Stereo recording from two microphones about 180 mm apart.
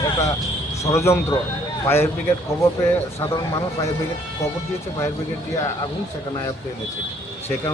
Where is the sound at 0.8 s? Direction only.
15° left (ahead or behind).